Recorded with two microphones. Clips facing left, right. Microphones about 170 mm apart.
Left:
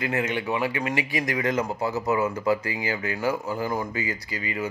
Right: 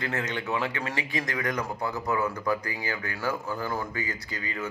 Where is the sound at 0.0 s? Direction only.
15° left (ahead or behind).